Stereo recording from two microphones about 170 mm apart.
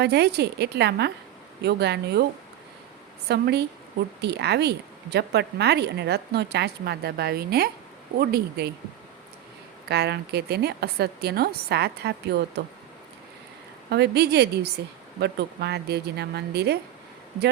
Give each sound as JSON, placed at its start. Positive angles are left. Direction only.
{"t": 0.0, "sound": "a woman's voice", "side_deg": -75}
{"t": 3.2, "sound": "a woman's voice", "side_deg": -75}
{"t": 9.9, "sound": "a woman's voice", "side_deg": -75}
{"t": 13.9, "sound": "a woman's voice", "side_deg": -75}